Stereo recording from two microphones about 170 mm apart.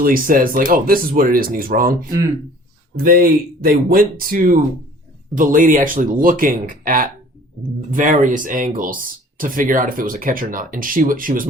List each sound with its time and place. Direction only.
0.0 s speech: 55° right (ahead or behind)
3.0 s speech: 55° right (ahead or behind)